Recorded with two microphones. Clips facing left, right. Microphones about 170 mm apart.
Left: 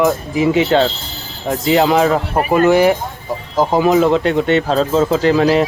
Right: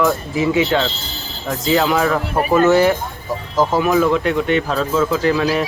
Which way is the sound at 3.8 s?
25° left (ahead or behind).